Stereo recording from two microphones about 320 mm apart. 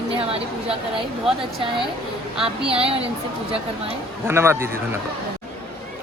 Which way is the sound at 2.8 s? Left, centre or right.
Centre.